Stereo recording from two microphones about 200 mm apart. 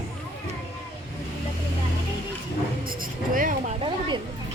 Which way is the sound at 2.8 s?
45° right (ahead or behind).